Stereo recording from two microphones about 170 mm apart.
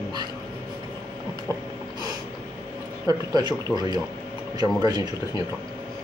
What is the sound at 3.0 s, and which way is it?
Speech, 25° right (ahead or behind).